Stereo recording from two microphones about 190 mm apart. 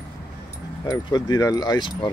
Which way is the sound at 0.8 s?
20° left (ahead or behind).